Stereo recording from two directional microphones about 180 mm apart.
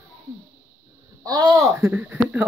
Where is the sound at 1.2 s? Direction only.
20° right (ahead or behind).